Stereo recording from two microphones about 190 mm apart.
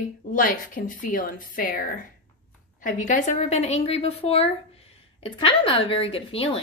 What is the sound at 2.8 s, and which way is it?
A woman's voice, 40° left (ahead or behind).